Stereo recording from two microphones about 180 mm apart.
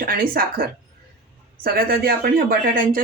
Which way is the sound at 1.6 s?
55° right (ahead or behind).